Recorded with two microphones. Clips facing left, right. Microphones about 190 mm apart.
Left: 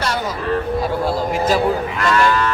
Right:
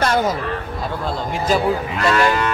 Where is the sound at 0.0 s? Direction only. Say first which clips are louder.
Right 4 dB; 50° right (ahead or behind).